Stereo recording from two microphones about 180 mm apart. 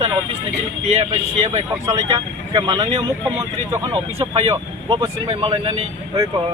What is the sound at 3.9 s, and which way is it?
Speech, 30° right (ahead or behind).